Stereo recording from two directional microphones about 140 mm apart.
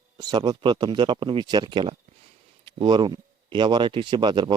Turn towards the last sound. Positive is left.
turn(degrees=-35)  # may be behind; listen again after turning